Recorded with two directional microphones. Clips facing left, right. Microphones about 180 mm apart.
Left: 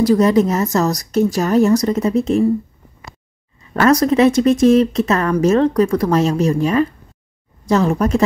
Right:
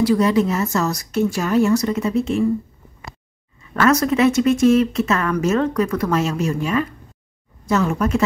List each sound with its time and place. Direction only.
0.0 s speech: 40° left (ahead or behind)
3.7 s speech: 35° left (ahead or behind)